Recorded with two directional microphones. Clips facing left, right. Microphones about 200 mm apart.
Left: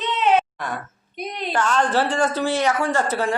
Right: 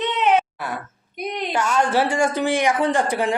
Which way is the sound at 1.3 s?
10° right (ahead or behind).